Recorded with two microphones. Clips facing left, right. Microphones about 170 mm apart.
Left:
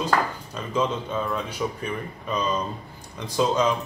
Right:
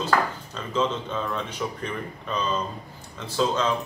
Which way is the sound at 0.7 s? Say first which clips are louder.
Left 1 dB; 10° left (ahead or behind).